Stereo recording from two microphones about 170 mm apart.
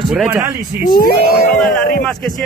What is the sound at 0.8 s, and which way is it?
Speech, 60° left (ahead or behind).